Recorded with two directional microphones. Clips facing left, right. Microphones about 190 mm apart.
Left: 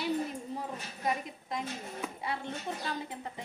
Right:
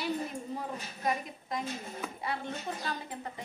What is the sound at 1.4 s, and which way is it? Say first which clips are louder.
Speech: right 1 dB; 20° left (ahead or behind).